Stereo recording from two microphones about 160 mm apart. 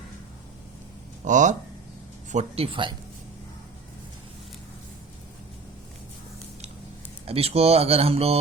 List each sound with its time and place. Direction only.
1.2 s speech: 50° right (ahead or behind)
7.3 s speech: 40° right (ahead or behind)